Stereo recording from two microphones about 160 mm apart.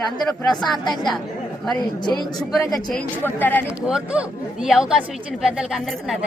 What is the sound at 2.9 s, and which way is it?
Speech, 10° left (ahead or behind).